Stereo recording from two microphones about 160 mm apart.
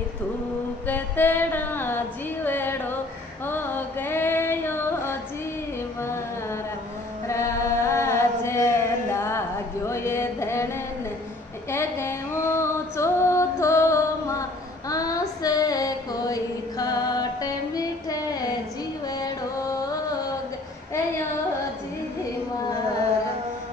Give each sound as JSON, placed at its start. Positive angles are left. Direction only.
{"t": 0.8, "sound": "female singing", "side_deg": 10}
{"t": 5.9, "sound": "carnatic music", "side_deg": 15}
{"t": 7.2, "sound": "chant", "side_deg": 20}
{"t": 9.8, "sound": "music", "side_deg": 15}
{"t": 11.7, "sound": "female singing", "side_deg": 15}
{"t": 19.0, "sound": "carnatic music", "side_deg": 25}